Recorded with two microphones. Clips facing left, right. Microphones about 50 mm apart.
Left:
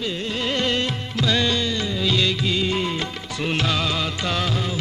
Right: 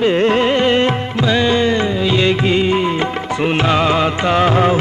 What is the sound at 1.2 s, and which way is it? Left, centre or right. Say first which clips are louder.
Music: right 6 dB; right.